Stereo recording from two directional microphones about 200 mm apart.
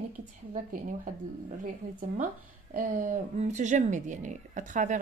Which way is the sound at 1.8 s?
45° right (ahead or behind).